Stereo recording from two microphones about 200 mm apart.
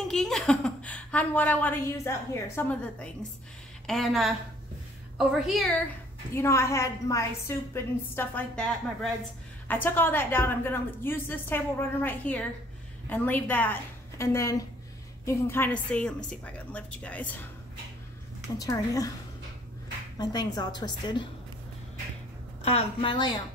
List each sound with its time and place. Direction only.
0.1 s a woman's voice: 5° left (ahead or behind)
6.3 s a woman's voice: 15° left (ahead or behind)
18.6 s a woman's voice: 15° left (ahead or behind)
20.2 s a woman's voice: 20° left (ahead or behind)
22.6 s a woman's voice: 30° left (ahead or behind)